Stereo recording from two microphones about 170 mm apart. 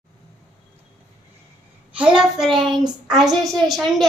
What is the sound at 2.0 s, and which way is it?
A woman's voice, 5° right (ahead or behind).